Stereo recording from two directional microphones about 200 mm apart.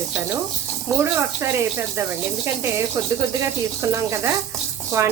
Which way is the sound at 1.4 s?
10° right (ahead or behind).